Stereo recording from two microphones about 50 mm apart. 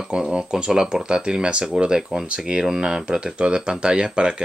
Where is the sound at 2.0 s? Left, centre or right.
Centre.